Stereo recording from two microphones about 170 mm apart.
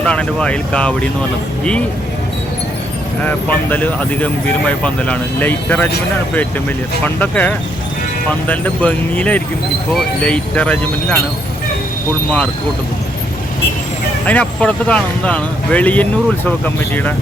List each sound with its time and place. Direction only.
0.0 s speech: 5° left (ahead or behind)
3.2 s speech: 10° left (ahead or behind)
7.0 s speech: 10° left (ahead or behind)
14.3 s speech: 10° left (ahead or behind)